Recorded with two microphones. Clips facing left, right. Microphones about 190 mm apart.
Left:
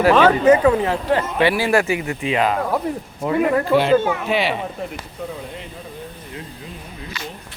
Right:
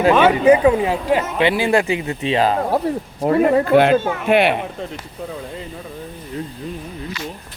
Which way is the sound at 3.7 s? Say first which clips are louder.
Right 2 dB; 55° right (ahead or behind).